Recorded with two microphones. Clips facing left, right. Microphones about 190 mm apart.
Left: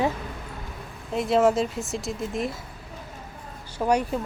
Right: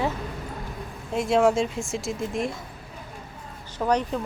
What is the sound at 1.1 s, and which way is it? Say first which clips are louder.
A woman's voice: even; centre (ahead or behind).